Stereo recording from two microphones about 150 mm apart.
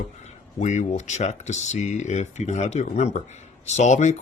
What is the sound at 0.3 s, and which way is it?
Speech, 50° left (ahead or behind).